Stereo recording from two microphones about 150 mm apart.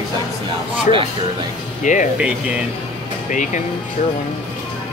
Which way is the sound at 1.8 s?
55° left (ahead or behind).